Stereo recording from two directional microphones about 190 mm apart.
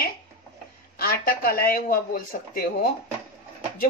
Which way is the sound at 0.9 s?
50° left (ahead or behind).